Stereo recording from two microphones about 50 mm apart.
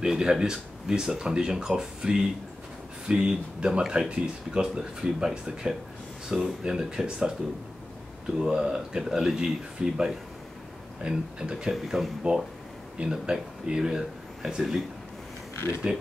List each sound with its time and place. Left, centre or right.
0.0 s speech: centre
8.4 s speech: centre
11.7 s speech: centre
12.9 s speech: centre
15.5 s a sound: left